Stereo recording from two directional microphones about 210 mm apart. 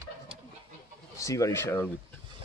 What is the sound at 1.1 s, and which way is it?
Speech, 15° left (ahead or behind).